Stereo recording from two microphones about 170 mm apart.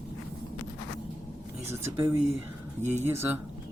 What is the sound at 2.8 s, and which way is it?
Speech, 45° right (ahead or behind).